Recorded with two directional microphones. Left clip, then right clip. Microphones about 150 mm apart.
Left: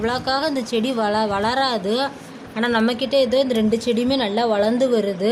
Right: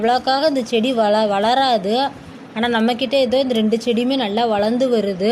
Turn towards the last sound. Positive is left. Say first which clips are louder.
# right 1 dB
turn(degrees=-15)  # may be behind; listen again after turning